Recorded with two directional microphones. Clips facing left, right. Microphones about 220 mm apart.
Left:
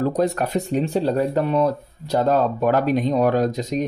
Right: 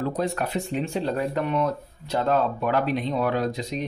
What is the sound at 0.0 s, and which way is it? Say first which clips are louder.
Speech: left 6 dB; 40° left (ahead or behind).